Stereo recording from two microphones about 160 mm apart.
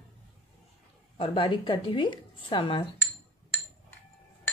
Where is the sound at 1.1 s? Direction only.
35° left (ahead or behind).